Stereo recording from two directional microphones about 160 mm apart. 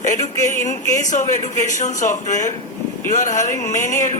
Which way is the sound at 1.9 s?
50° left (ahead or behind).